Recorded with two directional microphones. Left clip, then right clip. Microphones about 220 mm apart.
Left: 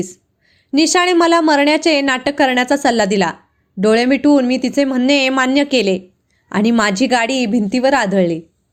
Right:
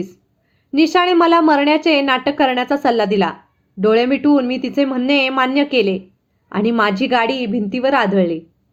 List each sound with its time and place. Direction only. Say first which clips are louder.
0.7 s a woman's voice: left 1 dB; 35° left (ahead or behind)